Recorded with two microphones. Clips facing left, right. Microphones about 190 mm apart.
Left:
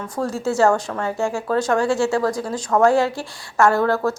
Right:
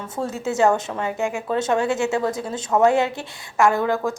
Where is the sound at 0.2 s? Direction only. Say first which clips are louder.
Left 2 dB; 20° right (ahead or behind).